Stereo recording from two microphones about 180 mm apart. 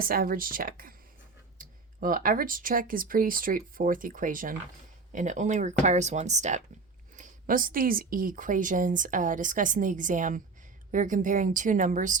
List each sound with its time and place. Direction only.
0.0 s a woman's voice: 55° right (ahead or behind)